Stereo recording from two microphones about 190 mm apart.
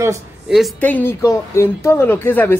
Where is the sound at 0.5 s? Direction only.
5° left (ahead or behind).